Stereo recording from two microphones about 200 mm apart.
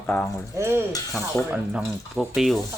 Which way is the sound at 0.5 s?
10° right (ahead or behind).